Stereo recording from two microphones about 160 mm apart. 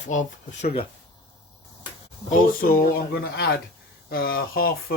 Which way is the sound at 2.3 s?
65° left (ahead or behind).